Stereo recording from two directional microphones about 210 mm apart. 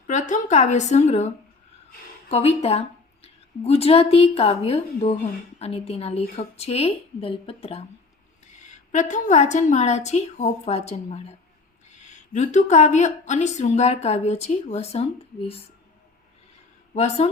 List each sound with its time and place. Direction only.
0.1 s a woman's voice: 35° left (ahead or behind)
2.3 s a woman's voice: 30° left (ahead or behind)
8.9 s a woman's voice: 35° left (ahead or behind)
16.9 s a woman's voice: 30° left (ahead or behind)